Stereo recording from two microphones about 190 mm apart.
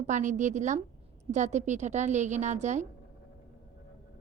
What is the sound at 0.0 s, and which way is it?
A woman's voice, 40° right (ahead or behind).